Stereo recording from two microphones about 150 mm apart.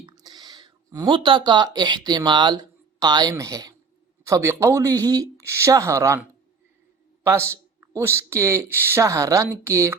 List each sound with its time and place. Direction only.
0.0 s speech: 30° right (ahead or behind)
7.3 s speech: 15° right (ahead or behind)